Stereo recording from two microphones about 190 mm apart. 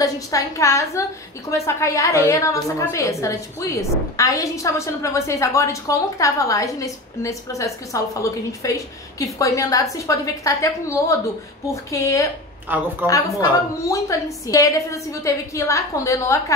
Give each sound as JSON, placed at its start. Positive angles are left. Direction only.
{"t": 0.0, "sound": "a woman's voice", "side_deg": 15}
{"t": 12.7, "sound": "a woman's voice", "side_deg": -10}
{"t": 13.4, "sound": "a woman's voice", "side_deg": 15}